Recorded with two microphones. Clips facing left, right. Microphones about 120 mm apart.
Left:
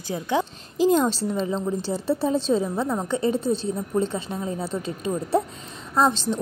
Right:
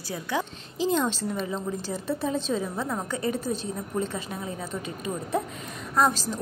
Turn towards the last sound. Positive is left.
turn(degrees=25)  # may be behind; listen again after turning